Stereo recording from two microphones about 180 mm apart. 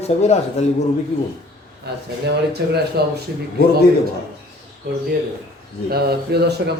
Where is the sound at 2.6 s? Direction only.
65° right (ahead or behind).